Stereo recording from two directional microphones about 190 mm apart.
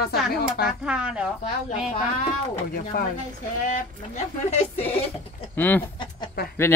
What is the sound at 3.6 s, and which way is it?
Speech, 40° left (ahead or behind).